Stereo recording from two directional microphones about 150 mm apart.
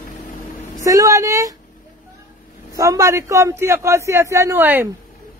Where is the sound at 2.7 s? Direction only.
20° right (ahead or behind).